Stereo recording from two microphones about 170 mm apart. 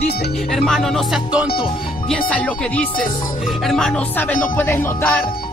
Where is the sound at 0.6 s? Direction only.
Centre (ahead or behind).